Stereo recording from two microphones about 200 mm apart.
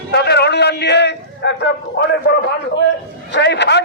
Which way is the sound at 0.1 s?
55° left (ahead or behind).